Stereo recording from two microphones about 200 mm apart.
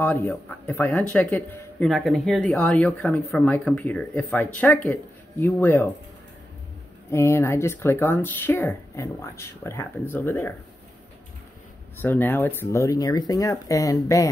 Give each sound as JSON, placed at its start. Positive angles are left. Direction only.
{"t": 0.0, "sound": "speech", "side_deg": 10}
{"t": 7.1, "sound": "speech", "side_deg": 15}
{"t": 12.0, "sound": "speech", "side_deg": 10}